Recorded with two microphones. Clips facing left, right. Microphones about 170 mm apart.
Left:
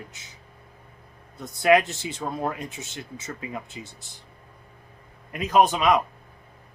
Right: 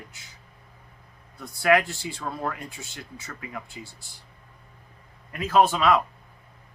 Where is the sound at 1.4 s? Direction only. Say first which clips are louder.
Left 2 dB; 20° left (ahead or behind).